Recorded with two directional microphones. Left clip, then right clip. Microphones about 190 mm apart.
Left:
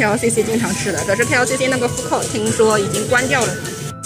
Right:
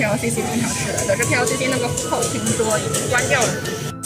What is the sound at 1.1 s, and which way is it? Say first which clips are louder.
Speech: left 3 dB; 50° left (ahead or behind).